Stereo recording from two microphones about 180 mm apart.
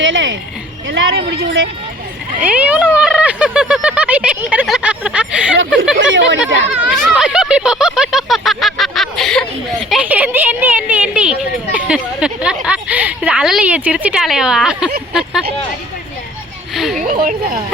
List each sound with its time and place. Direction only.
0.0 s a sound: 90° right
0.9 s speech: 75° right (ahead or behind)
2.4 s speech: 10° right (ahead or behind)
6.0 s speech: 90° right
6.7 s a sound: 5° right (ahead or behind)
9.9 s speech: 10° right (ahead or behind)
16.7 s speech: centre (ahead or behind)
17.0 s speech: 50° right (ahead or behind)